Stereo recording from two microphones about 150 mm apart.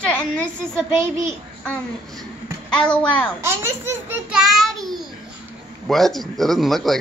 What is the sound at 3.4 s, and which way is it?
Speech, 15° right (ahead or behind).